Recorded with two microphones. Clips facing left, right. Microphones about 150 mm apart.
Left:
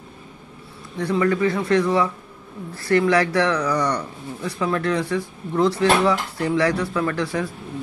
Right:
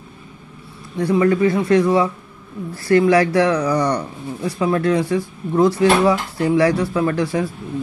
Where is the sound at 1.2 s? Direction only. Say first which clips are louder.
Right 3 dB; 25° right (ahead or behind).